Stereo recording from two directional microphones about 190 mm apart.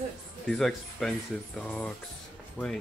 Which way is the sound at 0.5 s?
Centre (ahead or behind).